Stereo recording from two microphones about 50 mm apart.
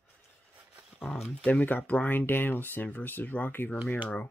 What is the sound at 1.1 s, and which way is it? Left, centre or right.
Speech, centre.